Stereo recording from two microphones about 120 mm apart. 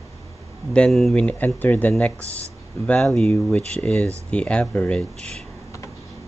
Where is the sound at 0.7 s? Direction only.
5° left (ahead or behind).